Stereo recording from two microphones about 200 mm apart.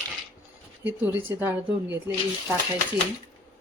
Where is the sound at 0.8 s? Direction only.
10° right (ahead or behind).